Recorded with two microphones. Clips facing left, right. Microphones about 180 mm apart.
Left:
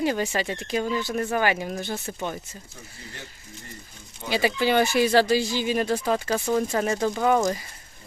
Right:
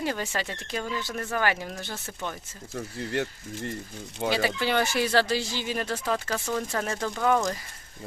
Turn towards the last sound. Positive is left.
turn(degrees=20)  # may be behind; listen again after turning